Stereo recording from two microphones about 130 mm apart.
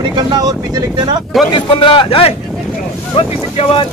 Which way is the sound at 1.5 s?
40° left (ahead or behind).